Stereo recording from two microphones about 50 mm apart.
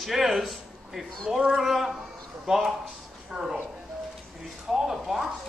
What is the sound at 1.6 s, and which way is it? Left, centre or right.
Speech, centre.